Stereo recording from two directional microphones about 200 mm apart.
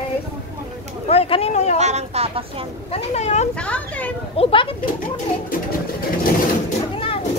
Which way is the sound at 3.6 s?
5° left (ahead or behind).